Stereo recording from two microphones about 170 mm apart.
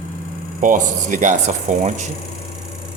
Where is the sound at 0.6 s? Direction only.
50° right (ahead or behind).